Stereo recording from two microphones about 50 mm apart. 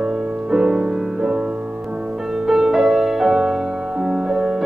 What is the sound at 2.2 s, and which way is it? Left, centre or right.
Music, centre.